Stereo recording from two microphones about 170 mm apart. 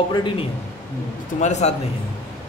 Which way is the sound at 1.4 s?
40° left (ahead or behind).